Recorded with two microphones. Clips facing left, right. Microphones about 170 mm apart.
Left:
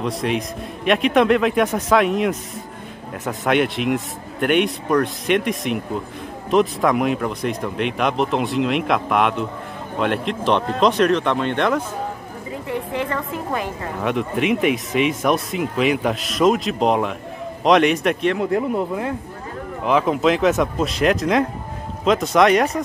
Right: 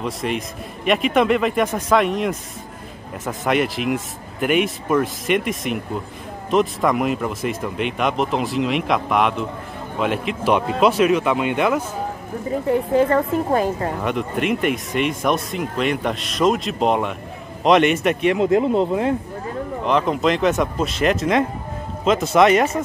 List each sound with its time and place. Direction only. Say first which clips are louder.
0.0 s speech: left 2 dB; centre (ahead or behind)
12.6 s a woman's voice: right 8 dB; 40° right (ahead or behind)
14.0 s speech: left 4 dB; centre (ahead or behind)
18.4 s speech: right 4 dB; 20° right (ahead or behind)
19.8 s speech: left 2 dB; 5° left (ahead or behind)